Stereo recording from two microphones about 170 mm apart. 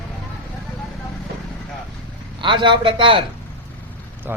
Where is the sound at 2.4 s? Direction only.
30° right (ahead or behind).